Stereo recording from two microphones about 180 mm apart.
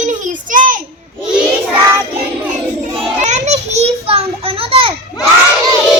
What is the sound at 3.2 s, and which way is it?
Children playing, 40° right (ahead or behind).